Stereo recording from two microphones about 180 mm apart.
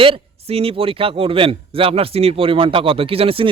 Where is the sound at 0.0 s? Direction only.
30° right (ahead or behind).